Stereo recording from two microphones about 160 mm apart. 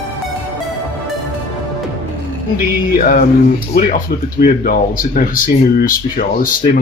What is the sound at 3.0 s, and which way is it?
Speech, 55° left (ahead or behind).